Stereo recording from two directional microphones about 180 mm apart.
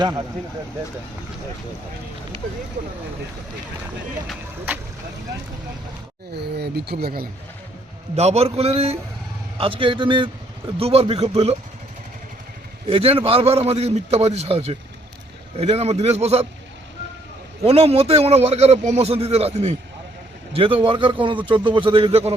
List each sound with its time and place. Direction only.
6.3 s speech: 65° right (ahead or behind)
8.1 s a man's voice: 35° right (ahead or behind)
12.9 s a man's voice: 30° right (ahead or behind)
17.6 s a man's voice: 35° right (ahead or behind)